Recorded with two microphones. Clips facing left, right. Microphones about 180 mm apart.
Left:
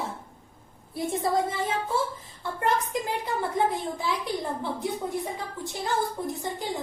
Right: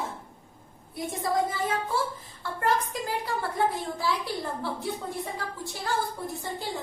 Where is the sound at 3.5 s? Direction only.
20° left (ahead or behind).